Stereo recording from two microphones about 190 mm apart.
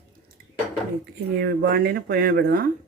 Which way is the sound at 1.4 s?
50° right (ahead or behind).